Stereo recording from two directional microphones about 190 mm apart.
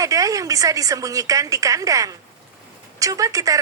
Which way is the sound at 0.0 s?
15° right (ahead or behind).